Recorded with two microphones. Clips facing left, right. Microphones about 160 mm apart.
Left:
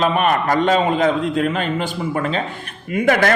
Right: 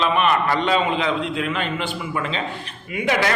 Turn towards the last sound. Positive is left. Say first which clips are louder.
# left 5 dB
turn(degrees=50)  # may be behind; listen again after turning